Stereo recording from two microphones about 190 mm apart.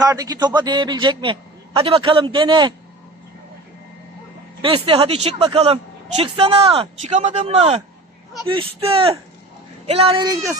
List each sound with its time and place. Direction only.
0.0 s a man's voice: 20° right (ahead or behind)
4.6 s a man's voice: 30° right (ahead or behind)
10.2 s speech: 15° right (ahead or behind)